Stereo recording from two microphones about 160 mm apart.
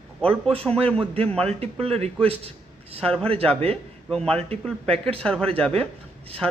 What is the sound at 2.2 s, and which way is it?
Speech, 40° right (ahead or behind).